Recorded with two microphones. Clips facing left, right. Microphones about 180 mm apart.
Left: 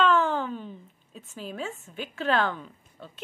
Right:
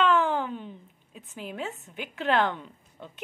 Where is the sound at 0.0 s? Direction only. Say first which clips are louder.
Left 1 dB; 15° right (ahead or behind).